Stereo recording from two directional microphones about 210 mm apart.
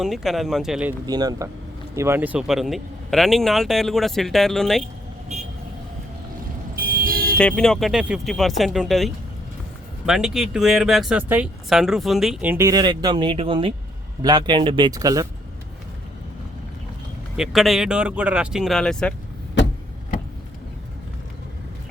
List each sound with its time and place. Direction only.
0.0 s speech: centre (ahead or behind)
1.0 s speech: 20° right (ahead or behind); by 4.8 s centre (ahead or behind)
5.3 s vehicle: 30° right (ahead or behind)
6.7 s vehicle: 45° right (ahead or behind)
7.3 s speech: 5° left (ahead or behind); by 15.3 s 15° right (ahead or behind)
17.3 s speech: centre (ahead or behind)